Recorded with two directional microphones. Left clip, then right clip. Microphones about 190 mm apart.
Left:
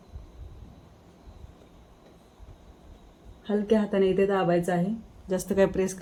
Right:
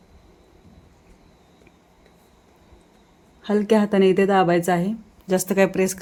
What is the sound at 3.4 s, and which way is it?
A woman's voice, 60° right (ahead or behind).